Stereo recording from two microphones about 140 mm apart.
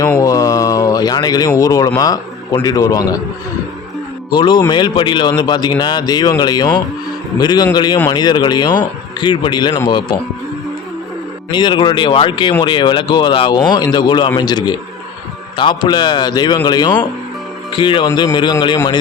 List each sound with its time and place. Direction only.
0.2 s a sound: 25° left (ahead or behind)
2.0 s a man's voice: 25° left (ahead or behind)
4.3 s a man's voice: 30° left (ahead or behind)
11.5 s speech: 35° left (ahead or behind)